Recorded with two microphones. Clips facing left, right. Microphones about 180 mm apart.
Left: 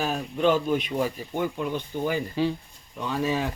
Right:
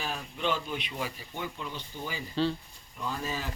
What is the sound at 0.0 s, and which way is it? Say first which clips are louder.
Speech: left 9 dB; 45° left (ahead or behind).